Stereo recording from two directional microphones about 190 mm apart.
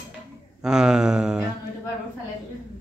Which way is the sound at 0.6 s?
5° right (ahead or behind).